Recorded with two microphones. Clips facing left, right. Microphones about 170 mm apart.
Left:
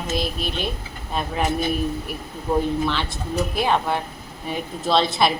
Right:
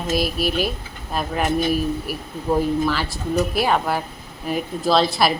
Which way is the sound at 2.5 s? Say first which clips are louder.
Right 2 dB; 5° right (ahead or behind).